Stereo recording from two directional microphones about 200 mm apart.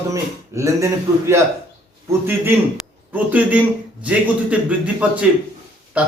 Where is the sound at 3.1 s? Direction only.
10° right (ahead or behind).